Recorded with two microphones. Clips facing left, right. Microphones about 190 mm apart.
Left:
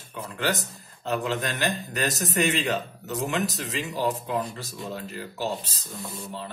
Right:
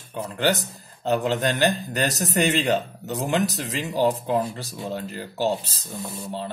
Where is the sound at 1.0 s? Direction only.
35° right (ahead or behind).